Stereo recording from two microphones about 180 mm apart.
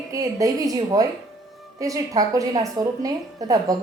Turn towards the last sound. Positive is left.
turn(degrees=-20)  # may be behind; listen again after turning